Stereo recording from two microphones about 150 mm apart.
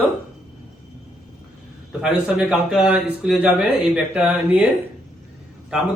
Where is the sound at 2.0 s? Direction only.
5° right (ahead or behind).